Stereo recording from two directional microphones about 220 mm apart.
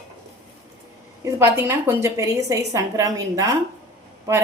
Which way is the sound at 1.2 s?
10° right (ahead or behind).